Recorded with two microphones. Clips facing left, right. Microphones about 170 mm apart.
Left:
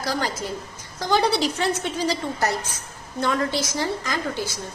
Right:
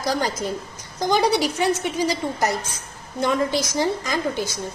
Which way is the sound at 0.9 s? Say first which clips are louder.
Right 2 dB; 15° right (ahead or behind).